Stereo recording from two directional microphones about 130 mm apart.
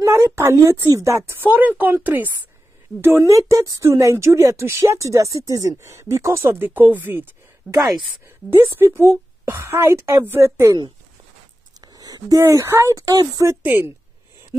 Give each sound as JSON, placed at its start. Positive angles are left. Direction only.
{"t": 0.0, "sound": "a woman's voice", "side_deg": -20}
{"t": 7.7, "sound": "speech", "side_deg": -5}
{"t": 8.5, "sound": "speech", "side_deg": -20}
{"t": 11.8, "sound": "speech", "side_deg": -30}